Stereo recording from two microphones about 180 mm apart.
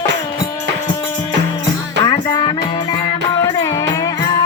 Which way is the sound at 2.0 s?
25° left (ahead or behind).